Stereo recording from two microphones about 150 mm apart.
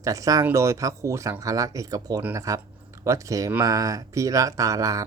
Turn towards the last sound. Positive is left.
turn(degrees=-25)  # may be behind; listen again after turning